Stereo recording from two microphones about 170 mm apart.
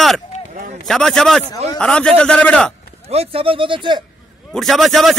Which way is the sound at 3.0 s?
35° right (ahead or behind).